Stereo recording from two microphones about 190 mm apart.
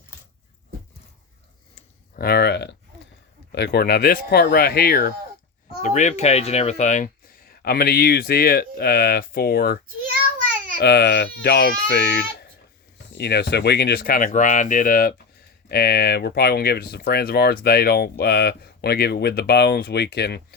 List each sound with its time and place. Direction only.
2.1 s speech: 55° left (ahead or behind)
5.8 s speech: 40° left (ahead or behind)
10.8 s speech: 55° left (ahead or behind)